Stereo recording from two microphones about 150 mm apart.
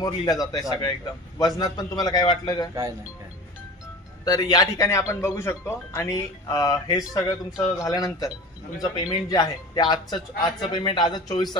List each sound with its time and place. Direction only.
0.0 s speech: 25° left (ahead or behind)
4.2 s speech: 25° left (ahead or behind)